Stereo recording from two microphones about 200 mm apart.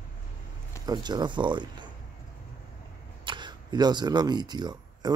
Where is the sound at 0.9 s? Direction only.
20° right (ahead or behind).